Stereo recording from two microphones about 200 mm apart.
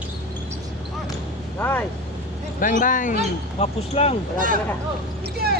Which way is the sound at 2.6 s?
40° left (ahead or behind).